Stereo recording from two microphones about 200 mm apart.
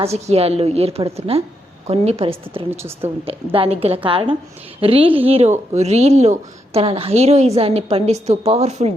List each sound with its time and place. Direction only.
0.0 s speech: 30° right (ahead or behind)
2.6 s a woman's voice: 10° right (ahead or behind)
3.2 s a woman's voice: 30° right (ahead or behind)